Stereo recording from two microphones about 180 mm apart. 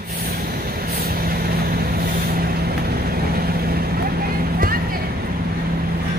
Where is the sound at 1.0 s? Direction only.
55° right (ahead or behind).